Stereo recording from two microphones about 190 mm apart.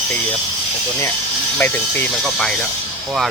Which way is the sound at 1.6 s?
10° left (ahead or behind).